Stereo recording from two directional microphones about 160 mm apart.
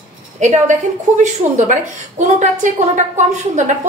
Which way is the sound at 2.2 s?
50° right (ahead or behind).